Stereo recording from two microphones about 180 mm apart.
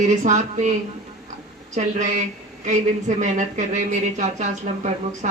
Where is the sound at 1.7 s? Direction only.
40° right (ahead or behind).